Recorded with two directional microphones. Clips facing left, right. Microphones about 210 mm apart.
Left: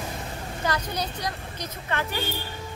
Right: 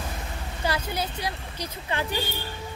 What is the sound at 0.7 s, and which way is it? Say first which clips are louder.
Speech: right 1 dB; 10° right (ahead or behind).